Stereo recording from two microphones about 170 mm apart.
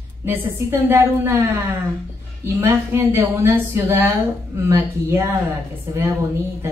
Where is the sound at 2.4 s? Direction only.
15° right (ahead or behind).